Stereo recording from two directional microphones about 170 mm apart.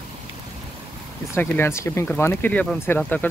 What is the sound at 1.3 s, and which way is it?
Speech, 15° left (ahead or behind).